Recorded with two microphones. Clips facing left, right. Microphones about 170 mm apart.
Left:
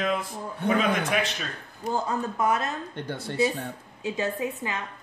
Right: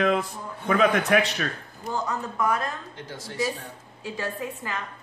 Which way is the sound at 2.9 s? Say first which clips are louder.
Left 5 dB; 60° left (ahead or behind).